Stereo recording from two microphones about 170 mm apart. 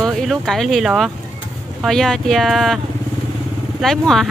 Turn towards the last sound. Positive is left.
turn(degrees=0)  # may be behind; listen again after turning